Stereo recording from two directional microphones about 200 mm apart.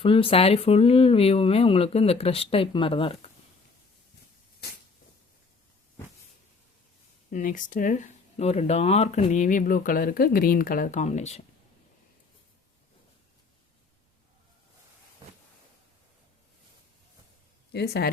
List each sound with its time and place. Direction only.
0.0 s speech: 25° left (ahead or behind)
7.3 s speech: 40° left (ahead or behind)
17.7 s speech: 55° left (ahead or behind)